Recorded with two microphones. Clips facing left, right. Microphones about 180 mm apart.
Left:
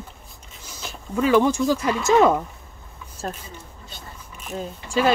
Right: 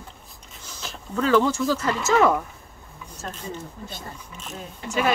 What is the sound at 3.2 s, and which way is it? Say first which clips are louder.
Speech: left 5 dB; 30° left (ahead or behind).